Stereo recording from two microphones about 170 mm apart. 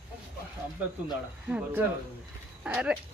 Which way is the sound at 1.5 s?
5° right (ahead or behind).